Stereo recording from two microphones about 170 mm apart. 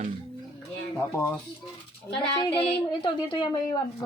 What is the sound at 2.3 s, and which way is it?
Speech, 30° left (ahead or behind).